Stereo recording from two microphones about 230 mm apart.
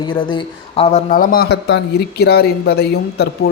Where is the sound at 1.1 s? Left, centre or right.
Left.